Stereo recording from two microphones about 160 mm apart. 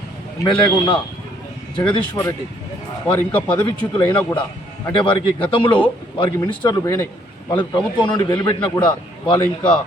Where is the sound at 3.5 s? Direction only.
30° left (ahead or behind).